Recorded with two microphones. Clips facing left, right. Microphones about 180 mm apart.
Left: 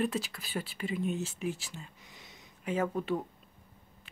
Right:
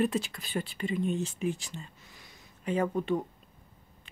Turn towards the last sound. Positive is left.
turn(degrees=0)  # may be behind; listen again after turning